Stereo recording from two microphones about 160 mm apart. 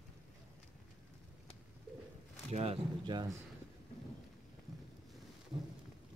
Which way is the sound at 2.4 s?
40° right (ahead or behind).